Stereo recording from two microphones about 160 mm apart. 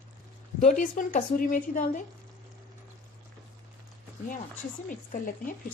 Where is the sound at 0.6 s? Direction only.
55° left (ahead or behind).